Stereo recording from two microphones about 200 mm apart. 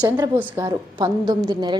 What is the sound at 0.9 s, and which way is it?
Speech, 20° right (ahead or behind).